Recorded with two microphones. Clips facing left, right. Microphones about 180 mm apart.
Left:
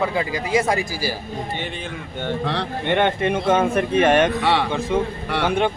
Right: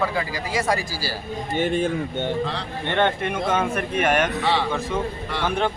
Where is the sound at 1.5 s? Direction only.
45° right (ahead or behind).